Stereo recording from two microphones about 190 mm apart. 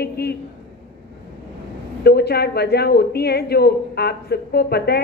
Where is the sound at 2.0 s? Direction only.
55° left (ahead or behind).